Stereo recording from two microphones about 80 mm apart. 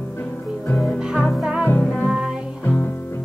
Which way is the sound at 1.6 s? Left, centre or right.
Left.